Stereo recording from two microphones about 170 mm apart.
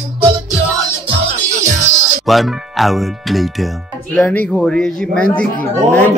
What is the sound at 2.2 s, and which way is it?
Speech, centre (ahead or behind).